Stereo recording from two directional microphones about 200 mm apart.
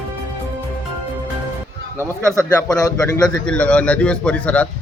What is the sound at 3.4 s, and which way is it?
Speech, 5° left (ahead or behind).